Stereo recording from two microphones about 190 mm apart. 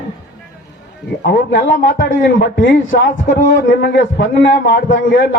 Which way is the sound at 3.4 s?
75° left (ahead or behind).